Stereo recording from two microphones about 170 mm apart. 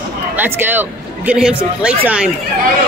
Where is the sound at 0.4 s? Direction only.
10° right (ahead or behind).